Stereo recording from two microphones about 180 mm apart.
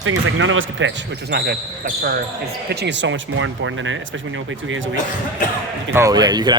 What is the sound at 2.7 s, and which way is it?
Speech, 70° right (ahead or behind).